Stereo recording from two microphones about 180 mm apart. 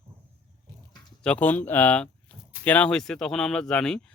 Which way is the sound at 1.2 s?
5° left (ahead or behind).